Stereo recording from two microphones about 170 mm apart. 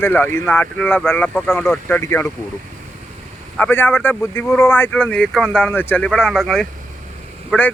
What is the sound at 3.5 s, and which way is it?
Speech, 10° left (ahead or behind).